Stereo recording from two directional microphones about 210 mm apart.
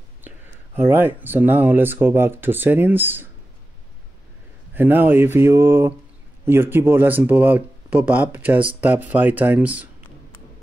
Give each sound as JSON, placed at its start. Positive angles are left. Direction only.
{"t": 0.2, "sound": "speech", "side_deg": -10}
{"t": 4.7, "sound": "speech", "side_deg": -10}